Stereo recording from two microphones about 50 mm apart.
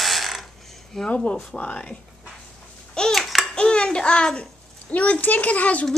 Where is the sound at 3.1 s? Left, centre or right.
Centre.